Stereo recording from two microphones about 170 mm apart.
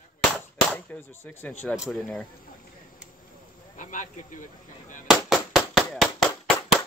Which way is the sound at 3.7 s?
50° left (ahead or behind).